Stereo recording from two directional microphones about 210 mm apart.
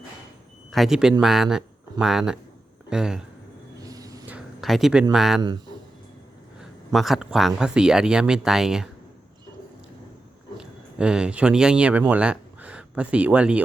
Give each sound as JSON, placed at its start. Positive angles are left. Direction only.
{"t": 0.7, "sound": "speech", "side_deg": 0}
{"t": 3.8, "sound": "vehicle", "side_deg": -15}
{"t": 4.3, "sound": "a sound", "side_deg": 0}
{"t": 5.1, "sound": "speech", "side_deg": 0}
{"t": 5.4, "sound": "speech", "side_deg": -20}
{"t": 6.6, "sound": "speech", "side_deg": 0}
{"t": 10.6, "sound": "speech", "side_deg": -5}